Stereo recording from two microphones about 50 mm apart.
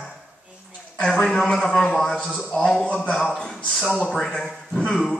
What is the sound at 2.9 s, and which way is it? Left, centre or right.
Speech, centre.